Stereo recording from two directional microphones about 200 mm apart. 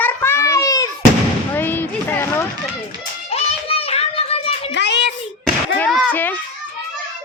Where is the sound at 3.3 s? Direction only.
30° left (ahead or behind).